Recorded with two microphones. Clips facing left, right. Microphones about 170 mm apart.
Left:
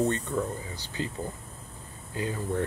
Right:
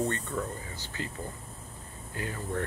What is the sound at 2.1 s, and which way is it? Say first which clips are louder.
Speech: left 4 dB; 20° left (ahead or behind).